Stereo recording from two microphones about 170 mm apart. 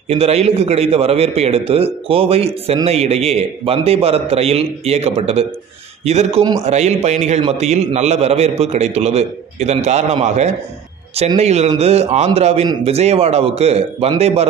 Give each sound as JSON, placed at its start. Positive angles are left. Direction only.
{"t": 0.1, "sound": "a man's voice", "side_deg": -35}